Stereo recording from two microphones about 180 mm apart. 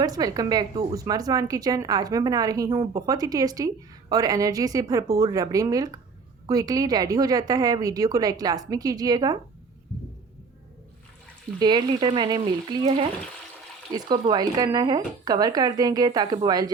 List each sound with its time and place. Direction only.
0.0 s a woman's voice: 20° right (ahead or behind)
11.6 s a woman's voice: 25° right (ahead or behind)
13.9 s a woman's voice: 25° right (ahead or behind)